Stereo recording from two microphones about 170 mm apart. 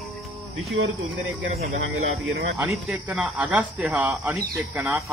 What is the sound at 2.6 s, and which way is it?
Speech, 15° right (ahead or behind).